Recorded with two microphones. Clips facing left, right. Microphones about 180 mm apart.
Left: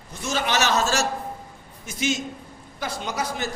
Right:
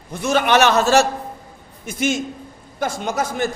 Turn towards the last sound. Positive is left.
turn(degrees=-50)  # may be behind; listen again after turning